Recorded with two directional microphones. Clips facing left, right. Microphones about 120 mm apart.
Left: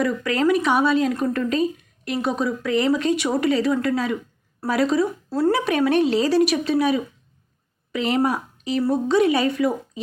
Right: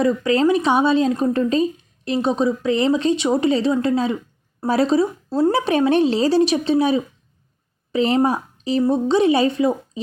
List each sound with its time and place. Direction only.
0.0 s a woman's voice: 25° right (ahead or behind)